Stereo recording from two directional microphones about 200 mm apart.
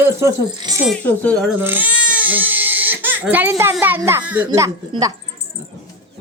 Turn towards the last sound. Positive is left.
turn(degrees=-15)  # may be behind; listen again after turning